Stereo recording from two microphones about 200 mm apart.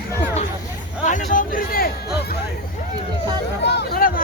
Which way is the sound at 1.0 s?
40° left (ahead or behind).